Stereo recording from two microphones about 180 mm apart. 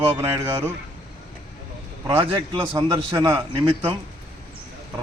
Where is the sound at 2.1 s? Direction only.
15° right (ahead or behind).